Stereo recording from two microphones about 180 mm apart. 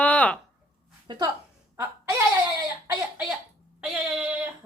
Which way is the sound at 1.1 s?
25° right (ahead or behind).